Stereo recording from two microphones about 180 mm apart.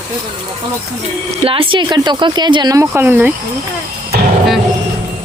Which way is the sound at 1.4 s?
30° right (ahead or behind).